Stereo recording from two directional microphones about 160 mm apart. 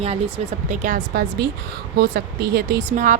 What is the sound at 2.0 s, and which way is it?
Speech, 75° right (ahead or behind).